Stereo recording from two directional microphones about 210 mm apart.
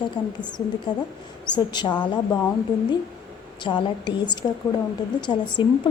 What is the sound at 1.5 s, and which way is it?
Speech, 20° left (ahead or behind).